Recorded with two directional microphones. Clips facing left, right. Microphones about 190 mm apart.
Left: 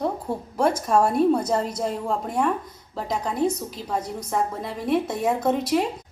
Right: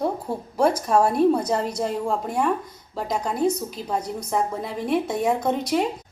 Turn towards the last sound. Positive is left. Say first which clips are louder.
# left 1 dB
turn(degrees=0)  # may be behind; listen again after turning